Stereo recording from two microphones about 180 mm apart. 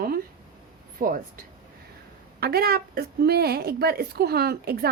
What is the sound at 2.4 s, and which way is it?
A woman's voice, 60° right (ahead or behind).